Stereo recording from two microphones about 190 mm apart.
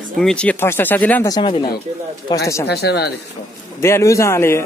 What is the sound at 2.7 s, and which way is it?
Speech, 60° left (ahead or behind).